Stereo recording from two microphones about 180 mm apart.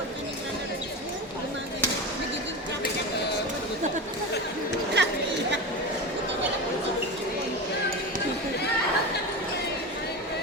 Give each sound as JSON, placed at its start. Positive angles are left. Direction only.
{"t": 5.0, "sound": "chatter", "side_deg": -70}